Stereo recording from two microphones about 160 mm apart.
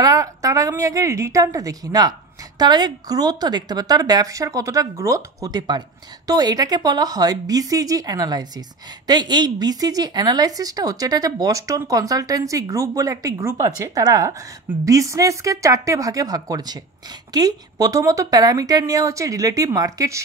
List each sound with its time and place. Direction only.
0.0 s speech: 20° right (ahead or behind)